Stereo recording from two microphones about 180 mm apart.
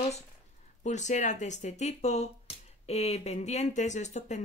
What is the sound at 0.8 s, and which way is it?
Speech, 40° left (ahead or behind).